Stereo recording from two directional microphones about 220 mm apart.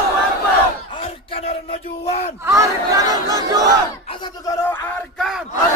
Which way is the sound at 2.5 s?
15° right (ahead or behind).